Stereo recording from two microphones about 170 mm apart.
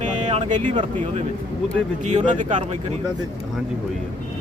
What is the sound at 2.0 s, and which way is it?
Speech, 45° right (ahead or behind).